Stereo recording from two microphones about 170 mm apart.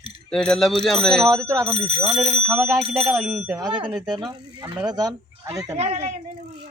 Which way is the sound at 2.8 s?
40° right (ahead or behind).